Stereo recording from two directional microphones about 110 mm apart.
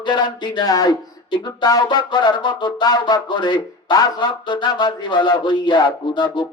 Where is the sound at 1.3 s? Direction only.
35° left (ahead or behind).